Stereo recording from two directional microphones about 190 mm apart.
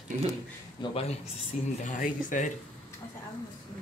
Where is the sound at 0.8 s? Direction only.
25° left (ahead or behind).